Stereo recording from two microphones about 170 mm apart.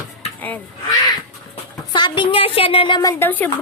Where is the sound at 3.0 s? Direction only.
15° left (ahead or behind).